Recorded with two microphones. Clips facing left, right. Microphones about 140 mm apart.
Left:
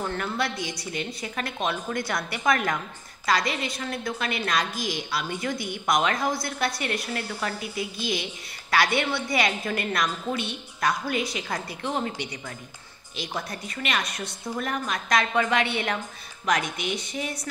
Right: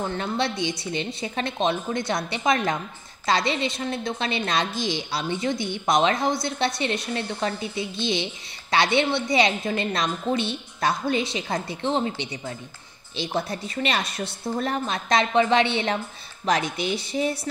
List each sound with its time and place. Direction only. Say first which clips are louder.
0.0 s a woman's voice: right 2 dB; 20° right (ahead or behind)